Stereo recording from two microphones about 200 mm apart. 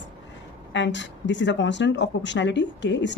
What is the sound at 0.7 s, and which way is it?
Speech, 65° left (ahead or behind).